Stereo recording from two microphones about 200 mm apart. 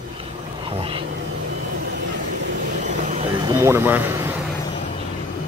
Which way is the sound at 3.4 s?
15° right (ahead or behind).